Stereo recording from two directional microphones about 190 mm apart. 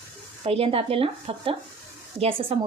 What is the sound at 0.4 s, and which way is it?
A woman's voice, 30° right (ahead or behind).